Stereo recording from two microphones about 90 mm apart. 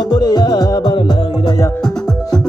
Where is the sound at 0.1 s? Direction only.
50° left (ahead or behind).